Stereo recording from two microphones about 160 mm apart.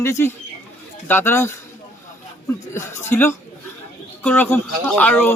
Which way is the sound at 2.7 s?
15° left (ahead or behind).